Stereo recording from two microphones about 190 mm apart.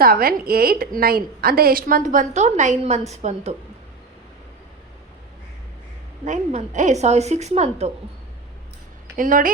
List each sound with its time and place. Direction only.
0.0 s a woman's voice: 50° right (ahead or behind); by 3.5 s 35° right (ahead or behind)
6.2 s a woman's voice: 40° right (ahead or behind)
9.1 s a woman's voice: 45° right (ahead or behind)